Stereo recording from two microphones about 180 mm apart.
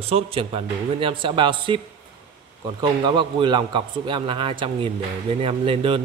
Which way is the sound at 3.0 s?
25° right (ahead or behind).